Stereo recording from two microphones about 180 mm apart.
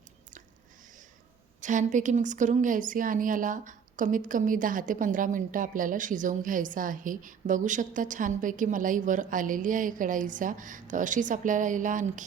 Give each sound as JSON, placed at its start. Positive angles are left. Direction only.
{"t": 1.6, "sound": "speech", "side_deg": -45}